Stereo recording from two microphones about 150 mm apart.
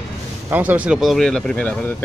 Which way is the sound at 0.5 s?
10° right (ahead or behind).